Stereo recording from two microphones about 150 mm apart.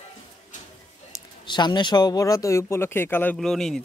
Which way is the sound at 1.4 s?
30° left (ahead or behind).